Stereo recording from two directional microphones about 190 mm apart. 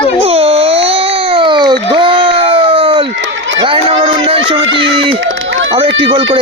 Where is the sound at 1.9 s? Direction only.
25° right (ahead or behind).